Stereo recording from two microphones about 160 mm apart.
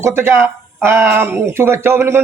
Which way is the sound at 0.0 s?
15° right (ahead or behind).